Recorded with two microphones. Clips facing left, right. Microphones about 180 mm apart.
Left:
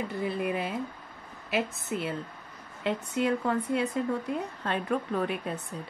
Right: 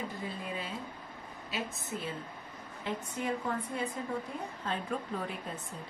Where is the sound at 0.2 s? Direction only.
70° left (ahead or behind).